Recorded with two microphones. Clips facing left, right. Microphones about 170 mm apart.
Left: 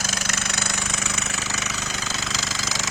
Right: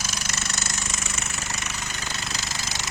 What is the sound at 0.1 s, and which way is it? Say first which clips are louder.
Engine: left 3 dB; 90° left.